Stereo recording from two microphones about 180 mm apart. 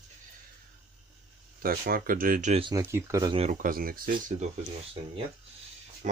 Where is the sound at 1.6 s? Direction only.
55° right (ahead or behind).